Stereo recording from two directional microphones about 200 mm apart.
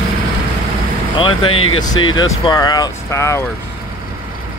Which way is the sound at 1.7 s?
20° left (ahead or behind).